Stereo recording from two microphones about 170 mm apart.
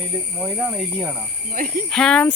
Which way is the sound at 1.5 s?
50° right (ahead or behind).